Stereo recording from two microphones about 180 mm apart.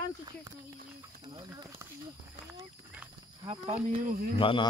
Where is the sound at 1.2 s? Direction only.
20° right (ahead or behind).